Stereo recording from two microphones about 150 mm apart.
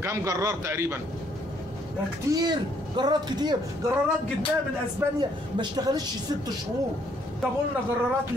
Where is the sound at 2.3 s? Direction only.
30° right (ahead or behind).